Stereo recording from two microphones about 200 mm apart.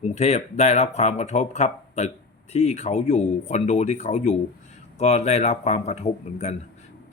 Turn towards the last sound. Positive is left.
turn(degrees=35)  # may be behind; listen again after turning